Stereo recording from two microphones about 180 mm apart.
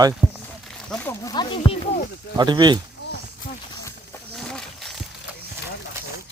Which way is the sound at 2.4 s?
25° right (ahead or behind).